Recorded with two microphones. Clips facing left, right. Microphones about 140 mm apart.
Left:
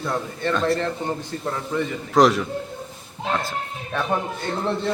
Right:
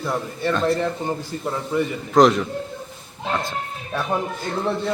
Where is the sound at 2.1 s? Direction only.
Centre (ahead or behind).